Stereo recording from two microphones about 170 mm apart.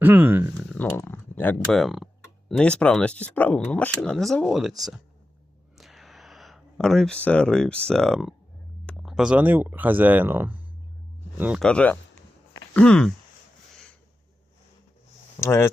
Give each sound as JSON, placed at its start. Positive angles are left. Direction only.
{"t": 0.0, "sound": "speech", "side_deg": -10}
{"t": 0.5, "sound": "speech", "side_deg": 10}
{"t": 1.7, "sound": "speech", "side_deg": 0}
{"t": 5.7, "sound": "a sound", "side_deg": 0}
{"t": 8.9, "sound": "speech", "side_deg": 0}
{"t": 11.6, "sound": "speech", "side_deg": 5}
{"t": 15.4, "sound": "speech", "side_deg": 15}